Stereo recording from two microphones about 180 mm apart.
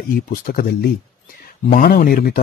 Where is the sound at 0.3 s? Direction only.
55° left (ahead or behind).